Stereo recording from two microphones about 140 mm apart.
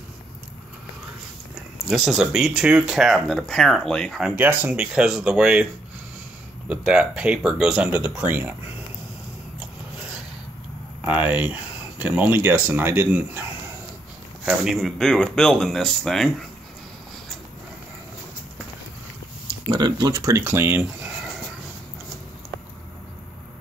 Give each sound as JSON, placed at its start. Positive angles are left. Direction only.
{"t": 1.9, "sound": "speech", "side_deg": 0}
{"t": 4.4, "sound": "speech", "side_deg": -10}
{"t": 6.7, "sound": "speech", "side_deg": -10}
{"t": 9.6, "sound": "a sound", "side_deg": -5}
{"t": 11.0, "sound": "speech", "side_deg": -10}
{"t": 19.7, "sound": "speech", "side_deg": -30}